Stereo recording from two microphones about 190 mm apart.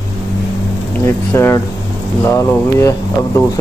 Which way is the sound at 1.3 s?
15° left (ahead or behind).